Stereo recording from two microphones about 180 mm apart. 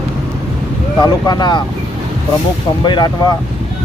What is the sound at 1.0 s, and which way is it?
Speech, 20° left (ahead or behind).